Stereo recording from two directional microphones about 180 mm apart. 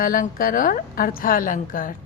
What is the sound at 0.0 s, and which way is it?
Speech, 50° left (ahead or behind).